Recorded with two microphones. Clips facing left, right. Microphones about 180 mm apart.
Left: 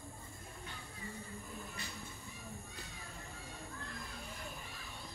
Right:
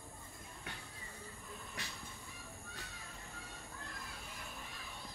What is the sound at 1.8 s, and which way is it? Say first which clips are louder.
Train: even; 90° right.